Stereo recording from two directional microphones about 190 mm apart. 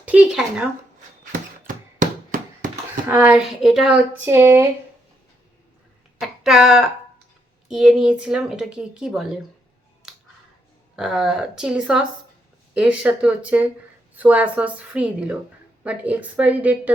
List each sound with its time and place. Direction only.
0.0 s a woman's voice: 5° right (ahead or behind)
1.2 s a sound: 45° right (ahead or behind)
3.1 s speech: 10° right (ahead or behind)
6.1 s a sound: centre (ahead or behind)
7.7 s a woman's voice: 5° right (ahead or behind)
10.9 s a woman's voice: 5° right (ahead or behind)